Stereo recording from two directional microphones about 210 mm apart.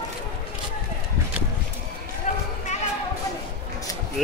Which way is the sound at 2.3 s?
35° left (ahead or behind).